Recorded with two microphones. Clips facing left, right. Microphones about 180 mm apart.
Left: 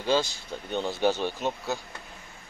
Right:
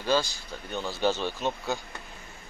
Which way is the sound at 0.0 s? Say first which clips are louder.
Left 1 dB; 20° left (ahead or behind).